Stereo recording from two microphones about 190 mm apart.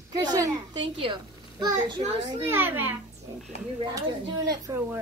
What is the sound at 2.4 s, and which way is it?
Speech, 10° right (ahead or behind).